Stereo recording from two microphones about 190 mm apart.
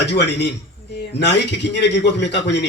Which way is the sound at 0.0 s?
60° left (ahead or behind).